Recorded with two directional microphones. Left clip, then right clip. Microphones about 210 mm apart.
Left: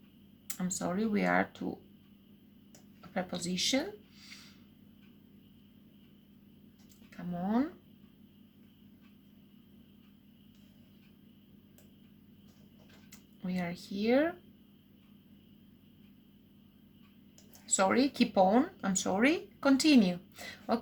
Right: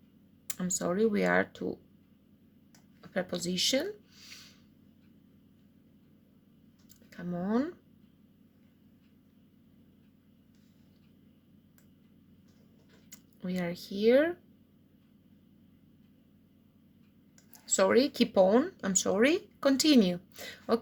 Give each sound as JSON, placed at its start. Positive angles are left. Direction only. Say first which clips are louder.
{"t": 0.4, "sound": "speech", "louder": "right 4 dB", "side_deg": -50}
{"t": 3.2, "sound": "speech", "louder": "right 3 dB", "side_deg": -50}
{"t": 7.1, "sound": "speech", "louder": "right 2 dB", "side_deg": -45}
{"t": 13.1, "sound": "speech", "louder": "right 2 dB", "side_deg": -50}
{"t": 17.7, "sound": "speech", "louder": "right 3 dB", "side_deg": -50}